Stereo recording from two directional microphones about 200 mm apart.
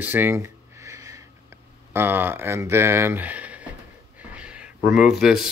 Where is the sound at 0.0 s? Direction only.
10° right (ahead or behind).